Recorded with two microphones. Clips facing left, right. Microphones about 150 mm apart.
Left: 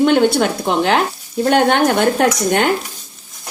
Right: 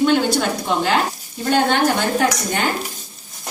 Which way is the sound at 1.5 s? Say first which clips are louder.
Left 3 dB; 65° left (ahead or behind).